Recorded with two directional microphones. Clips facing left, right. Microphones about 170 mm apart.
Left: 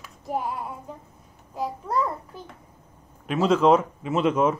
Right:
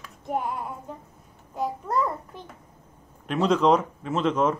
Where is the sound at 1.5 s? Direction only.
Centre (ahead or behind).